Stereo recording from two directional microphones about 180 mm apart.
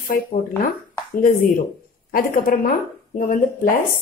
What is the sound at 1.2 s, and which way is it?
Speech, 50° left (ahead or behind).